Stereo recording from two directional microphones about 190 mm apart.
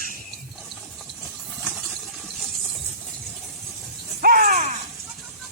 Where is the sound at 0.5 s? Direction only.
Centre (ahead or behind).